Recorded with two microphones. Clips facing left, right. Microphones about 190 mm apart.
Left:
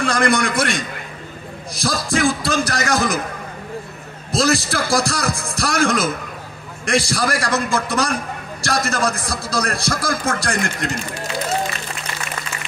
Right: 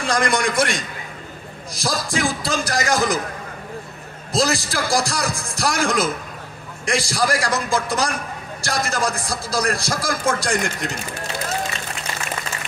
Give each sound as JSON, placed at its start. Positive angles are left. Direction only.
{"t": 0.0, "sound": "speech", "side_deg": 60}
{"t": 4.3, "sound": "speech", "side_deg": 60}